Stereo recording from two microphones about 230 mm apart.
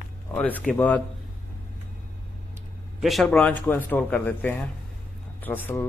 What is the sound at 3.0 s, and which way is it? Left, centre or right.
Speech, centre.